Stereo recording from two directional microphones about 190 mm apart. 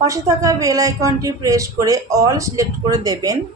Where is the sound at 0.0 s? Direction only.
15° right (ahead or behind).